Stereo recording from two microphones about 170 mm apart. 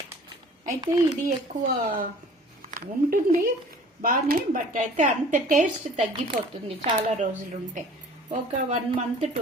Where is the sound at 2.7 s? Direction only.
55° right (ahead or behind).